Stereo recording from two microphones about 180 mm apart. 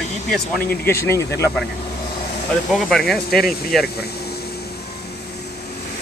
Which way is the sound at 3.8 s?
60° left (ahead or behind).